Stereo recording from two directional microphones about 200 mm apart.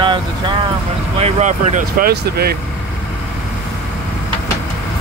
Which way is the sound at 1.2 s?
35° right (ahead or behind).